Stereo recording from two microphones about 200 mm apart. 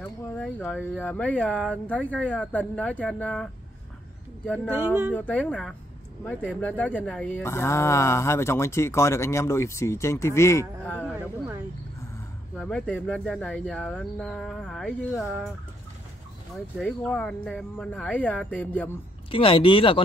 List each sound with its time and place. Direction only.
0.0 s speech: 5° left (ahead or behind)
4.6 s speech: 10° right (ahead or behind)
5.1 s speech: 10° left (ahead or behind)
12.5 s speech: centre (ahead or behind)
16.7 s speech: 5° left (ahead or behind)
19.3 s speech: 25° left (ahead or behind)